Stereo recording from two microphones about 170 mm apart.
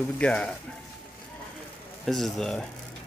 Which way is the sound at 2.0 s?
Centre (ahead or behind).